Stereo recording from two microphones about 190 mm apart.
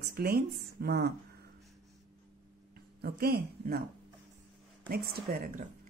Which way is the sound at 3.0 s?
55° right (ahead or behind).